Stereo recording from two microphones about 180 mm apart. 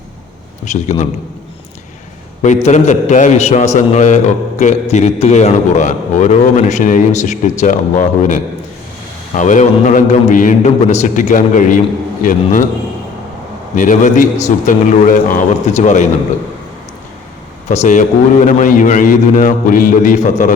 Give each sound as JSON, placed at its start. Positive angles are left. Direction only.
{"t": 0.6, "sound": "a man's voice", "side_deg": 40}
{"t": 2.6, "sound": "a man's voice", "side_deg": 40}
{"t": 13.7, "sound": "a man's voice", "side_deg": 45}
{"t": 17.7, "sound": "a man's voice", "side_deg": 40}